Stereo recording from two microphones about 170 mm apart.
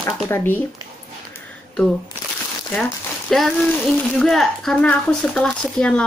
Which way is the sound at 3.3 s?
Centre (ahead or behind).